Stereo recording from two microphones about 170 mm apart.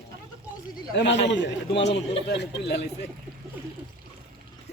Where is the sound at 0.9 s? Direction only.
90° left.